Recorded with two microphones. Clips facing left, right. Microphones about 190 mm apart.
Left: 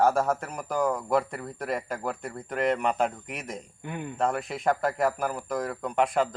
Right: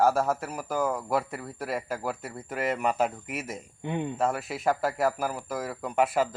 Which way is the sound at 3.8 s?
25° right (ahead or behind).